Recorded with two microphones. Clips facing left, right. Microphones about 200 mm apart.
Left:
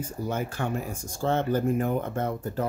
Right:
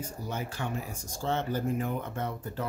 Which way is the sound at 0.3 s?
50° left (ahead or behind).